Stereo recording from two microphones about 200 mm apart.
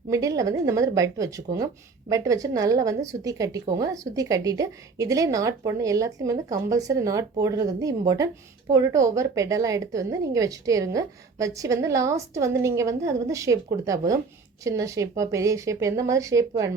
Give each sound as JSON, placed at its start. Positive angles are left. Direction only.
{"t": 0.1, "sound": "a woman's voice", "side_deg": -15}